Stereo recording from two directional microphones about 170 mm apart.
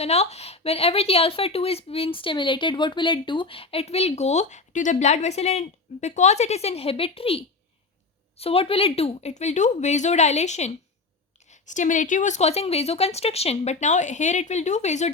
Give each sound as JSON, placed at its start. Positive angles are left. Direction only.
{"t": 0.0, "sound": "a woman's voice", "side_deg": 40}